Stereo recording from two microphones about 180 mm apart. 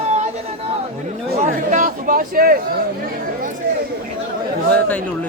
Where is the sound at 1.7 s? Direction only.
45° right (ahead or behind).